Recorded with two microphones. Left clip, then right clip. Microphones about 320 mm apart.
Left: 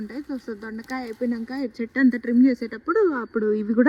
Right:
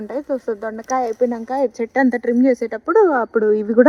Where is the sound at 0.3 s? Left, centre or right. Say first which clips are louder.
Right 11 dB; centre.